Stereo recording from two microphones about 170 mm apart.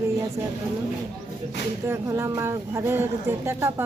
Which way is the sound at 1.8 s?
15° right (ahead or behind).